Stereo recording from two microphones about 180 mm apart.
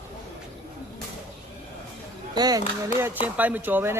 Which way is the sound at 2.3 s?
20° right (ahead or behind).